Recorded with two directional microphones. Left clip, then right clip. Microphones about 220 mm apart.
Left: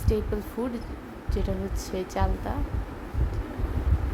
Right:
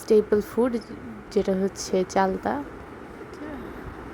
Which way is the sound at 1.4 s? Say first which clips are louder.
Right 9 dB; 25° right (ahead or behind).